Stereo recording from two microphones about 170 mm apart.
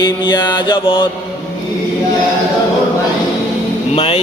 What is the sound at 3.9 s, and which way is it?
Speech, 35° left (ahead or behind).